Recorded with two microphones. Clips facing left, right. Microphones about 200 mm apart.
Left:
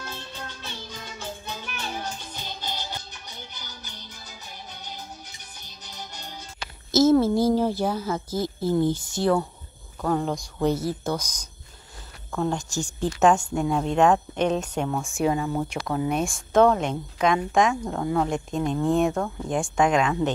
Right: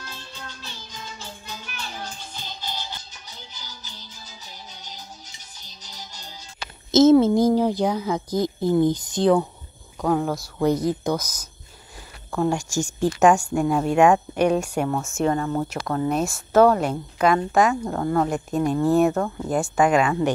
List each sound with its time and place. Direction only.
0.6 s music: 60° left (ahead or behind)
3.5 s music: 55° left (ahead or behind)
6.9 s a woman's voice: 20° right (ahead or behind)
10.0 s a woman's voice: 5° right (ahead or behind)